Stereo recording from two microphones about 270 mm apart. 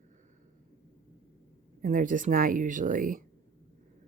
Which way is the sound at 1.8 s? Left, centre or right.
Right.